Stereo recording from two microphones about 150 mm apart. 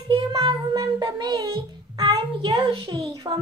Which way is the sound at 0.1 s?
30° right (ahead or behind).